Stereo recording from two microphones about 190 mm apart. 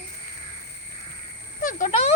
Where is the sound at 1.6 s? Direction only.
40° left (ahead or behind).